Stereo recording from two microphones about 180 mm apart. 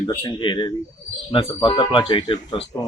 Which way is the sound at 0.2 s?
25° left (ahead or behind).